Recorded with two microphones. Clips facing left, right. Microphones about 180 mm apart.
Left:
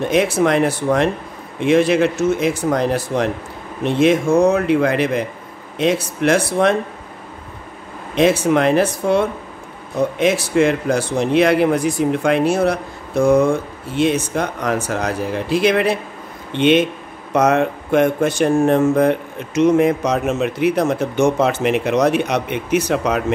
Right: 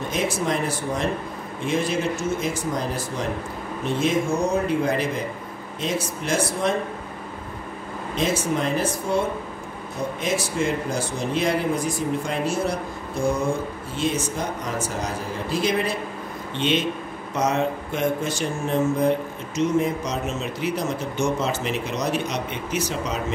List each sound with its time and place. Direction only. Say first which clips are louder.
0.1 s speech: left 9 dB; 70° left (ahead or behind)
8.1 s speech: left 9 dB; 70° left (ahead or behind)